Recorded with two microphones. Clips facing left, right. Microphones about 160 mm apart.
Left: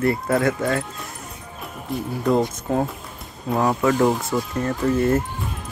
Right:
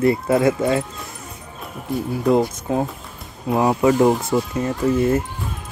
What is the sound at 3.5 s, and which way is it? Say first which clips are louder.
Speech: right 3 dB; 20° right (ahead or behind).